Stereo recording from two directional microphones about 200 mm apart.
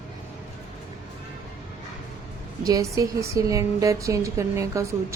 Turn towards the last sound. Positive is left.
turn(degrees=-15)  # may be behind; listen again after turning